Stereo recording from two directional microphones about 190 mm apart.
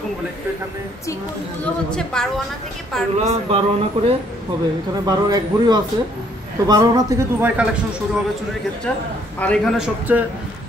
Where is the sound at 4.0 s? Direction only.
30° right (ahead or behind); by 7.6 s 10° right (ahead or behind).